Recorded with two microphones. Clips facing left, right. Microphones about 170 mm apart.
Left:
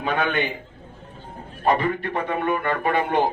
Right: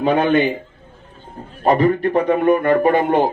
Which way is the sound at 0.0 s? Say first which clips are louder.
Right 8 dB; 40° right (ahead or behind).